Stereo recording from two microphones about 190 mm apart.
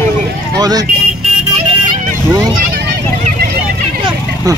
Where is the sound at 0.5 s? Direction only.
20° right (ahead or behind).